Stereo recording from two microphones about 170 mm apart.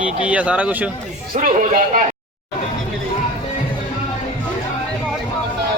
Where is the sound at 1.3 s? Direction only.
50° right (ahead or behind).